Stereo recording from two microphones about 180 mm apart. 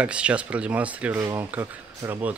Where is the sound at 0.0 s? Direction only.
5° right (ahead or behind).